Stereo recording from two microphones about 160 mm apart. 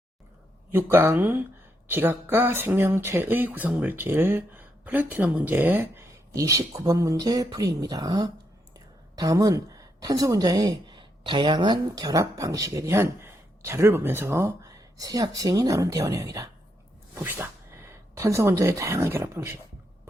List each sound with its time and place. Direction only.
0.7 s a woman's voice: 15° right (ahead or behind)